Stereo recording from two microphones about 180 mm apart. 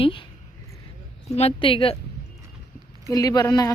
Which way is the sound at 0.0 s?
30° left (ahead or behind).